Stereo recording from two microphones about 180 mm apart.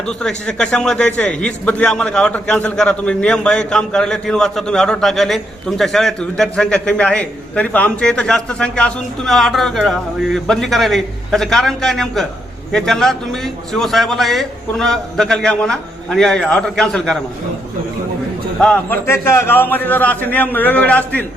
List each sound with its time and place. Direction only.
0.0 s a man's voice: 5° left (ahead or behind)
18.6 s a man's voice: 10° left (ahead or behind)